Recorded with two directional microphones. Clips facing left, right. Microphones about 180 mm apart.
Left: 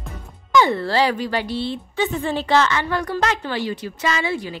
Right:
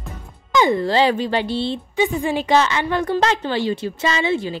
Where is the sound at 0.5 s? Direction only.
15° right (ahead or behind).